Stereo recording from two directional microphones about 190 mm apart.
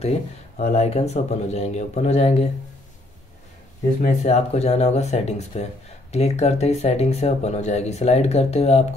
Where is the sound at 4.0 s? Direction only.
35° left (ahead or behind).